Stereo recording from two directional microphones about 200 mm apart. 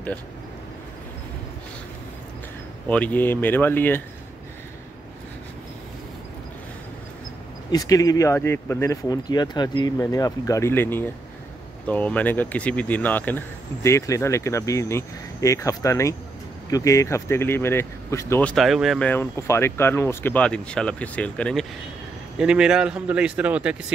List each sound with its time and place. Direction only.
2.9 s speech: 5° left (ahead or behind)
7.7 s a man's voice: 15° left (ahead or behind); by 23.8 s 5° right (ahead or behind)